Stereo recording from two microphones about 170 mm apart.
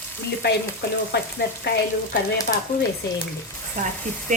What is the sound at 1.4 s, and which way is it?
Frying, 70° left (ahead or behind).